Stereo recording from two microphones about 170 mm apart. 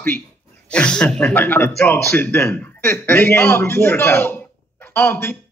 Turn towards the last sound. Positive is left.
turn(degrees=15)  # may be behind; listen again after turning